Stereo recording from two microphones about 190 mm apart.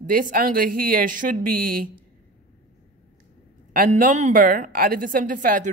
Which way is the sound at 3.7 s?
45° right (ahead or behind).